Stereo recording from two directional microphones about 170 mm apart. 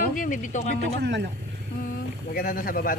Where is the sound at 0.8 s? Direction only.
80° right.